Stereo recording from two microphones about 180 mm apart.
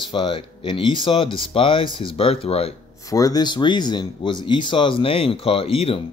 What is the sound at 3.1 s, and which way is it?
Speech, 20° left (ahead or behind).